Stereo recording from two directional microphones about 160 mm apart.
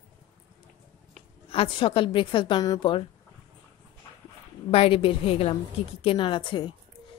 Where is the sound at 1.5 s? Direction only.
35° left (ahead or behind).